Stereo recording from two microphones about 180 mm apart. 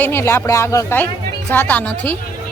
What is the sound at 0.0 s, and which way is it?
A woman's voice, 15° left (ahead or behind).